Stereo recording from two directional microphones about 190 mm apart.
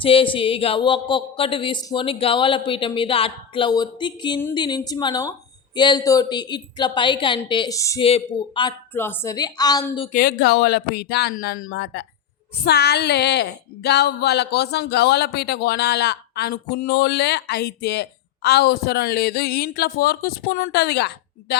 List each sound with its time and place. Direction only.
0.0 s a woman's voice: 30° left (ahead or behind)
8.0 s a woman's voice: 30° left (ahead or behind)
8.9 s a woman's voice: 10° left (ahead or behind)
10.1 s speech: 50° left (ahead or behind)
11.7 s speech: 60° left (ahead or behind)